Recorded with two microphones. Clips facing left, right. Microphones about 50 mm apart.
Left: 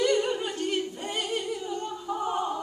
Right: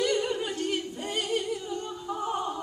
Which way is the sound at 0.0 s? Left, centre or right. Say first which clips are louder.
Left 2 dB; centre.